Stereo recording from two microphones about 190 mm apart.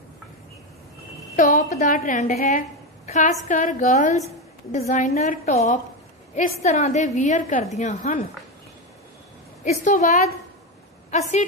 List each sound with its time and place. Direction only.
1.3 s a woman's voice: 40° left (ahead or behind)
9.7 s a woman's voice: 40° left (ahead or behind)